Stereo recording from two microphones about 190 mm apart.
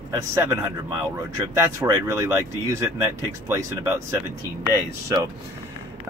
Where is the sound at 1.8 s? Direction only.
15° right (ahead or behind).